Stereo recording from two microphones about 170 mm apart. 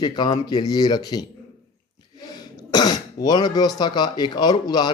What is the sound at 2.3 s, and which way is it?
Cough, 25° left (ahead or behind).